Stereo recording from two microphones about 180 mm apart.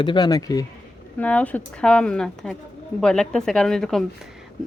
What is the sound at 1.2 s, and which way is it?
Speech, 10° left (ahead or behind).